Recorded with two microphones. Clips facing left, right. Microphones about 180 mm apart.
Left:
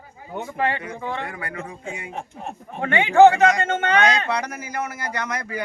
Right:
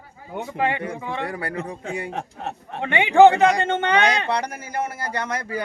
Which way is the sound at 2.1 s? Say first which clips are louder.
Right 2 dB; 75° right (ahead or behind).